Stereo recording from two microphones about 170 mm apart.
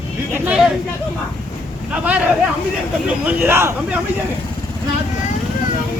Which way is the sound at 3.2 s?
10° right (ahead or behind).